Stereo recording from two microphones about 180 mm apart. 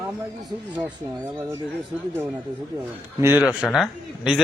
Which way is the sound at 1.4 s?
15° right (ahead or behind).